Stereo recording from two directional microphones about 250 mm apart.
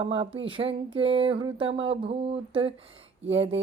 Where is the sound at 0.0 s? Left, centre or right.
Right.